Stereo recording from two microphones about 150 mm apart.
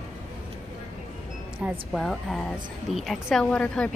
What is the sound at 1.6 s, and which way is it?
A woman's voice, centre (ahead or behind).